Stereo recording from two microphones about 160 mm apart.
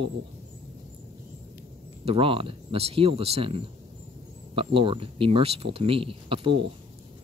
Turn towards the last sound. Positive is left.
turn(degrees=-35)  # may be behind; listen again after turning